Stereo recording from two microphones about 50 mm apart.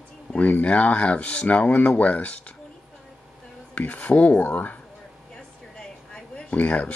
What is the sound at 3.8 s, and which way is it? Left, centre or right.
Speech, left.